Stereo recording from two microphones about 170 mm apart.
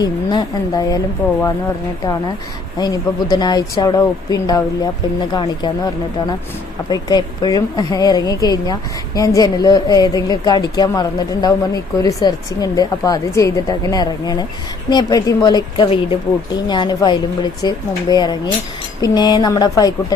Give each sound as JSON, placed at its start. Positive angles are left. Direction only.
{"t": 0.0, "sound": "a woman's voice", "side_deg": 25}
{"t": 2.7, "sound": "a woman's voice", "side_deg": 25}